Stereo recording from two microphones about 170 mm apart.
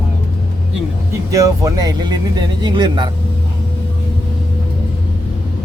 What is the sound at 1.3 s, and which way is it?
Speech, 20° right (ahead or behind).